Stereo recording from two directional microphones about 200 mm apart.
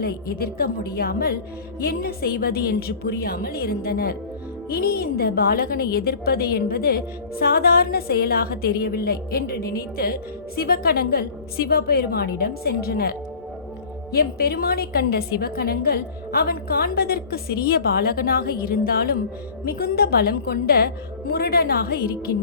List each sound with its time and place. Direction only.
0.0 s a woman's voice: 50° left (ahead or behind)